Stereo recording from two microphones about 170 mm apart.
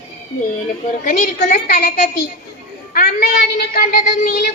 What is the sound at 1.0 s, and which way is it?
Speech, 50° left (ahead or behind).